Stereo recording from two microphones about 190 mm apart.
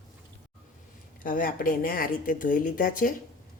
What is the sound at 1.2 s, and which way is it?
A woman's voice, 45° left (ahead or behind).